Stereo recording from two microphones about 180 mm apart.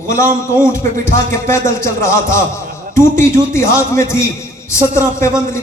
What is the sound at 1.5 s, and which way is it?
A man's voice, 15° left (ahead or behind).